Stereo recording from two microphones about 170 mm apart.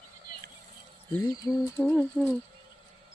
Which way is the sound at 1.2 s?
20° left (ahead or behind).